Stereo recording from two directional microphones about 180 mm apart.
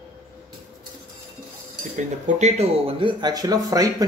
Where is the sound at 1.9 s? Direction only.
40° right (ahead or behind).